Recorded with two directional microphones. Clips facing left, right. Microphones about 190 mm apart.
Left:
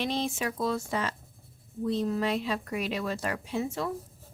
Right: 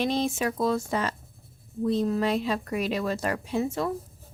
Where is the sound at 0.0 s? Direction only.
45° right (ahead or behind).